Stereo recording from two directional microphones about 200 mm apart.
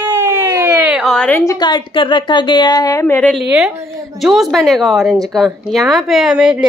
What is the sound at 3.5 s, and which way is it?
Speech, 10° right (ahead or behind).